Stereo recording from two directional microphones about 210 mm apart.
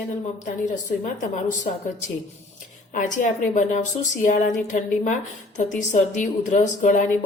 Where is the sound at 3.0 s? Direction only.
35° left (ahead or behind).